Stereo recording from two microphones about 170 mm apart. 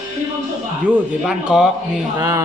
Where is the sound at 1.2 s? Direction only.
Centre (ahead or behind).